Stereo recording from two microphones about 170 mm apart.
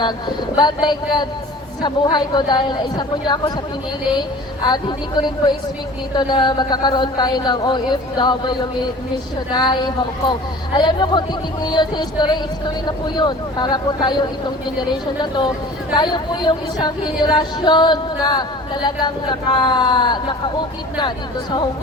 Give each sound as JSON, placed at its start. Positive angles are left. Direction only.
{"t": 0.5, "sound": "speech", "side_deg": 25}
{"t": 4.7, "sound": "speech", "side_deg": 25}